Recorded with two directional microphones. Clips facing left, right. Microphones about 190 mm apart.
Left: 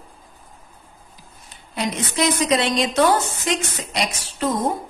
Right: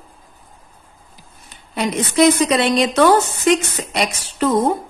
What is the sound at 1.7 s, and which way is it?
A woman's voice, 60° right (ahead or behind).